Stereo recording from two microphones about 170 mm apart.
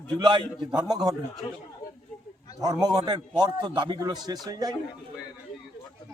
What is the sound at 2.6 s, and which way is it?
A man's voice, 25° right (ahead or behind).